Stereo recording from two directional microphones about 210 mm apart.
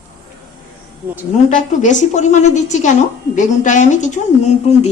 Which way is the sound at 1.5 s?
35° left (ahead or behind).